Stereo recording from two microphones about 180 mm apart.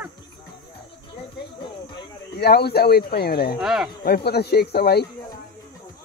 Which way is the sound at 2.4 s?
65° left (ahead or behind).